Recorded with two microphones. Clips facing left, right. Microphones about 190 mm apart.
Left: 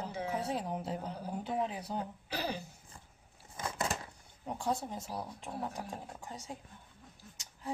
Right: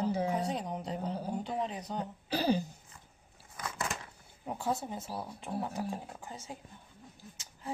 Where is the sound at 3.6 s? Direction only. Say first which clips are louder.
Left 2 dB; 30° left (ahead or behind).